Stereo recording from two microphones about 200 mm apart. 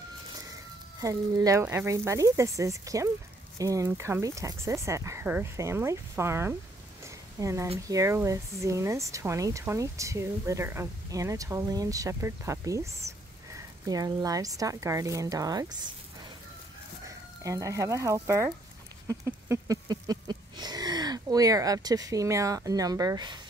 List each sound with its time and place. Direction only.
1.0 s speech: 15° right (ahead or behind)
7.0 s a sound: 15° right (ahead or behind)
7.9 s speech: 15° right (ahead or behind)
17.4 s speech: 15° right (ahead or behind)